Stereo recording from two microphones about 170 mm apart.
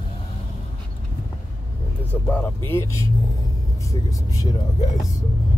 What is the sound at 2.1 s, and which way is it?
Speech, 10° left (ahead or behind).